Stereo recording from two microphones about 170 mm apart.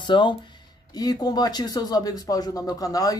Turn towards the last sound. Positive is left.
turn(degrees=20)  # may be behind; listen again after turning